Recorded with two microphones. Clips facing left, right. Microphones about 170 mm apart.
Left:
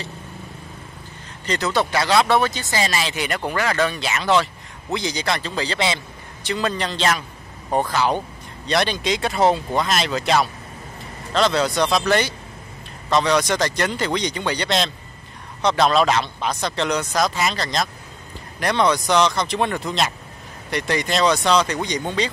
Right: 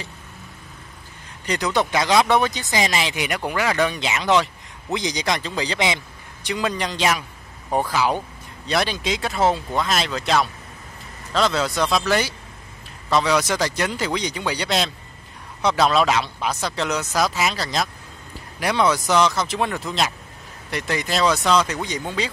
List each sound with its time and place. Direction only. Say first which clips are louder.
1.4 s speech: even; 15° right (ahead or behind)